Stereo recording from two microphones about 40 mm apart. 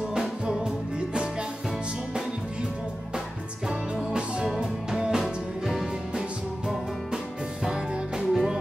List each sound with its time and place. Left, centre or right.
0.1 s music: centre
3.6 s music: centre
7.6 s music: centre